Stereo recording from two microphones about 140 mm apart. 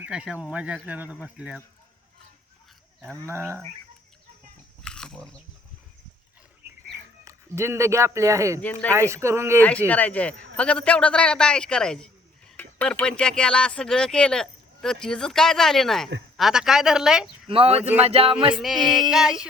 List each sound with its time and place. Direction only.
0.0 s speech: 5° right (ahead or behind)
3.2 s speech: 20° right (ahead or behind)
4.8 s biting: 5° left (ahead or behind)
7.3 s speech: 20° right (ahead or behind)
9.6 s a man's voice: 10° left (ahead or behind)
17.5 s speech: 45° right (ahead or behind)
18.0 s music: 45° right (ahead or behind)
18.5 s speech: centre (ahead or behind)